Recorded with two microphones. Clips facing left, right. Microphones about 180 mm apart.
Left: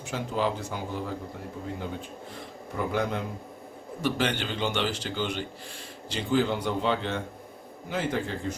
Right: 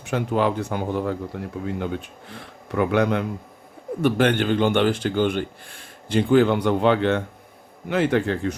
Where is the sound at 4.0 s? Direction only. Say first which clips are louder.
Right 8 dB; 55° right (ahead or behind).